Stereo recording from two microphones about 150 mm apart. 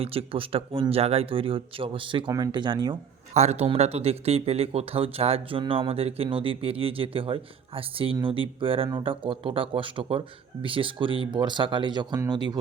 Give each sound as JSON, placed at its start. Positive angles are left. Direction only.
{"t": 0.0, "sound": "speech", "side_deg": -40}
{"t": 3.3, "sound": "speech", "side_deg": -45}